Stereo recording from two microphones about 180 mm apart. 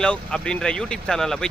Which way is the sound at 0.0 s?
5° left (ahead or behind).